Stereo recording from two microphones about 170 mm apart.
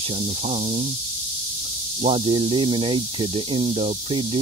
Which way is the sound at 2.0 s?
35° right (ahead or behind).